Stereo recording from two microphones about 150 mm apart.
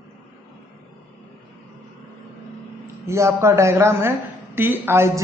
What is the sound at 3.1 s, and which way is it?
A woman's voice, 20° right (ahead or behind).